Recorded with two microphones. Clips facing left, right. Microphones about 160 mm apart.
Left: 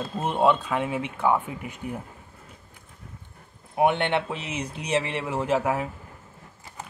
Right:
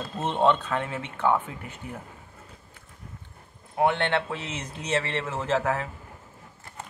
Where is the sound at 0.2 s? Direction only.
10° left (ahead or behind).